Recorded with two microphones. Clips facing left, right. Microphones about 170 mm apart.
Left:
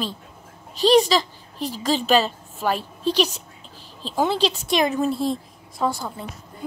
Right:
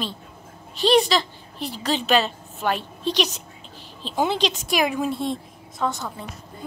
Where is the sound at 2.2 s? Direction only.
5° left (ahead or behind).